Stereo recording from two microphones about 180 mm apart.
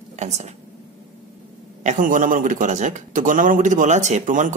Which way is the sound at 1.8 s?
45° right (ahead or behind).